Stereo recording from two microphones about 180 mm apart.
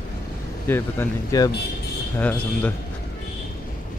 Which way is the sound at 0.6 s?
10° left (ahead or behind).